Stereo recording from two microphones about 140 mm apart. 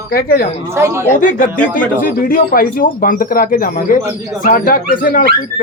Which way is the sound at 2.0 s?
85° left.